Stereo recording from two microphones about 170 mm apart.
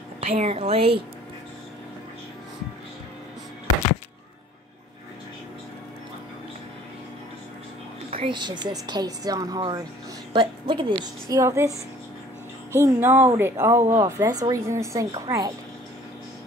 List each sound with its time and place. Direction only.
0.2 s a woman's voice: 40° right (ahead or behind)
8.2 s a woman's voice: 25° right (ahead or behind)
12.7 s a woman's voice: 15° right (ahead or behind)